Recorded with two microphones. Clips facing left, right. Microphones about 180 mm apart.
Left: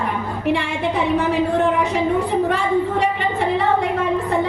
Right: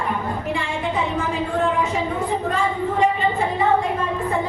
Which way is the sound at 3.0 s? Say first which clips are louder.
Right 1 dB; 70° left (ahead or behind).